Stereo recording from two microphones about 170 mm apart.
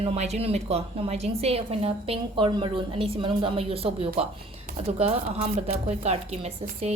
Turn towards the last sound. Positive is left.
turn(degrees=-40)  # may be behind; listen again after turning